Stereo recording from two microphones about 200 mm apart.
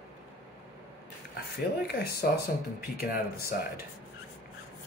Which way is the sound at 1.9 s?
50° left (ahead or behind).